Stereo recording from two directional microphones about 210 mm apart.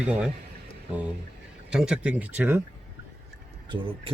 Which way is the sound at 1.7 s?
5° right (ahead or behind).